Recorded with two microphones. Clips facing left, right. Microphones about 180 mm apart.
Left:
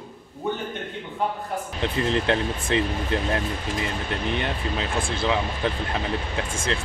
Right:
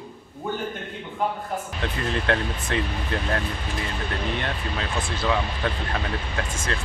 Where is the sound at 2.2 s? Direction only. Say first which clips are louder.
Left 1 dB; 25° left (ahead or behind).